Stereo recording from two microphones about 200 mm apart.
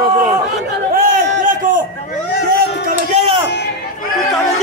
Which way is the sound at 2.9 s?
30° right (ahead or behind).